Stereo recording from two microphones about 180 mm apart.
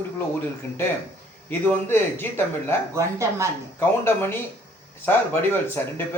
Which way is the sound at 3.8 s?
15° left (ahead or behind).